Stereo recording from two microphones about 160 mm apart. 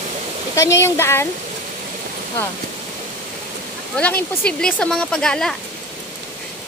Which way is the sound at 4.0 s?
10° left (ahead or behind).